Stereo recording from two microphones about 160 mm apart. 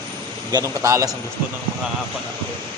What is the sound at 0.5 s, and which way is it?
Speech, 20° right (ahead or behind).